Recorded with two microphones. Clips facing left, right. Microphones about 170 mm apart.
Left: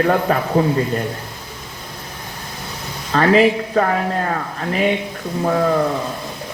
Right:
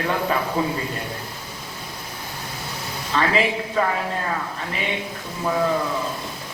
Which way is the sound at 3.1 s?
40° left (ahead or behind).